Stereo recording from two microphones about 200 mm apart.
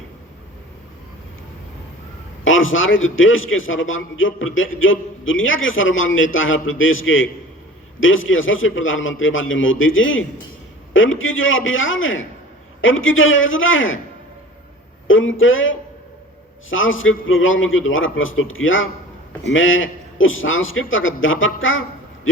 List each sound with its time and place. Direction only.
2.4 s a man's voice: 80° left
15.0 s a man's voice: 75° left (ahead or behind)